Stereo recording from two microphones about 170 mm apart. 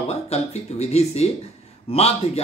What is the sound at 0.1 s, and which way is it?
A man's voice, 40° left (ahead or behind).